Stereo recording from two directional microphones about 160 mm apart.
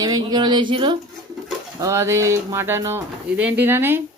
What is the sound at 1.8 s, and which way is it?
Speech, 20° right (ahead or behind).